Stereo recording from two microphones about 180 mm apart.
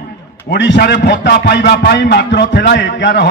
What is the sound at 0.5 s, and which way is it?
A man's voice, 70° left (ahead or behind).